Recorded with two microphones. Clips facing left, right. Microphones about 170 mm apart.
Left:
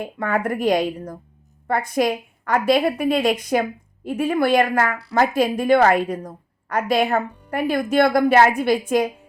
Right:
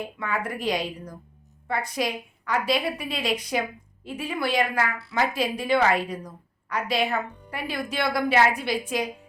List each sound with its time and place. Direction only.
0.0 s a woman's voice: 50° left (ahead or behind)